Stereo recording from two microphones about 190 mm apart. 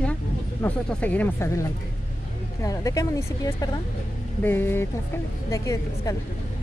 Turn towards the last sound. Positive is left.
turn(degrees=20)  # may be behind; listen again after turning